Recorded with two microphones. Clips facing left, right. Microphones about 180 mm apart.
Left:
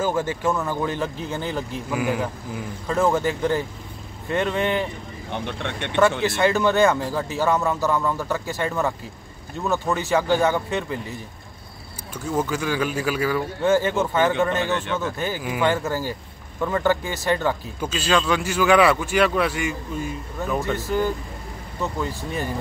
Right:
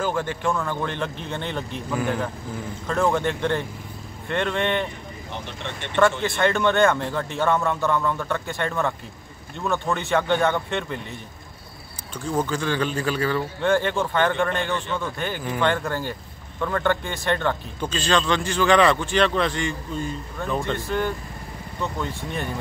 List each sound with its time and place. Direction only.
0.0 s speech: 10° left (ahead or behind)
5.3 s speech: 60° left (ahead or behind)
6.2 s speech: centre (ahead or behind)
21.9 s speech: 5° left (ahead or behind)